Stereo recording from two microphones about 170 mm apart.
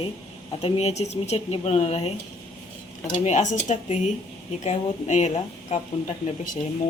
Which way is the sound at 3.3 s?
40° left (ahead or behind).